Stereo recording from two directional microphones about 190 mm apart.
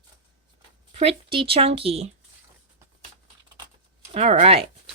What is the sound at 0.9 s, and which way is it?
Speech, 30° right (ahead or behind).